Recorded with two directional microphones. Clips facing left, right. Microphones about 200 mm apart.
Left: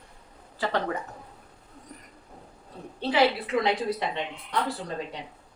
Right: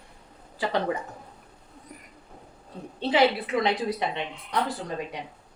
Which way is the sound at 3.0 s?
20° right (ahead or behind).